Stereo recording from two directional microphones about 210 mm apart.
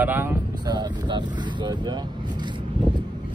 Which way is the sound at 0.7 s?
20° right (ahead or behind).